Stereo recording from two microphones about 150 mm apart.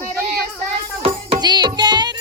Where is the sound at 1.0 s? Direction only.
30° right (ahead or behind).